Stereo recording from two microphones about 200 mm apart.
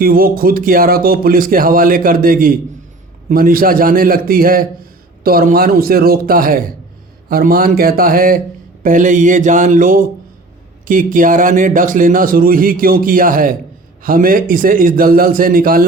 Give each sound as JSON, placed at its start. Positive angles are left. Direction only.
{"t": 0.0, "sound": "a man's voice", "side_deg": -45}